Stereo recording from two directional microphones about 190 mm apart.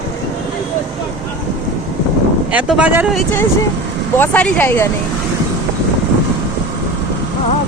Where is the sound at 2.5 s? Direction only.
5° right (ahead or behind).